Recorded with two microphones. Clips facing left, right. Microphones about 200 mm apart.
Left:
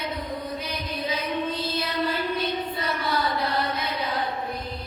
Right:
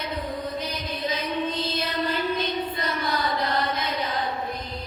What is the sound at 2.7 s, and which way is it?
Chant, 10° left (ahead or behind).